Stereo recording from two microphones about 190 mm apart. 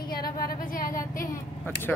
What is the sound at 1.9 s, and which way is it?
Speech, 5° left (ahead or behind).